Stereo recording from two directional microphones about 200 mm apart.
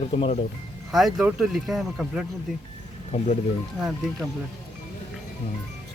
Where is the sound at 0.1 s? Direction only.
30° left (ahead or behind).